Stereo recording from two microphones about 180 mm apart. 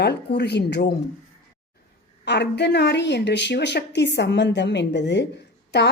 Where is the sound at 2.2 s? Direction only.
70° left (ahead or behind).